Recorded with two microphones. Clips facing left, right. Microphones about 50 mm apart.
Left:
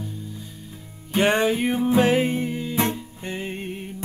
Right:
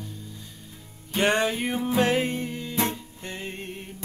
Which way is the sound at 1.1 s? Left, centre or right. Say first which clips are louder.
Left 3 dB; centre.